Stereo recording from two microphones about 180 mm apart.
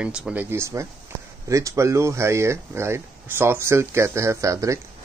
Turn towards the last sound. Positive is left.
turn(degrees=-15)  # may be behind; listen again after turning